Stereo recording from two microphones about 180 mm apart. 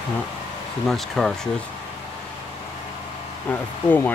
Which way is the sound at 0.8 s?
Centre (ahead or behind).